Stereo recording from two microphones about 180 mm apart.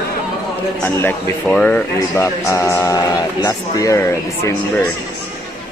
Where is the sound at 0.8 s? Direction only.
10° left (ahead or behind).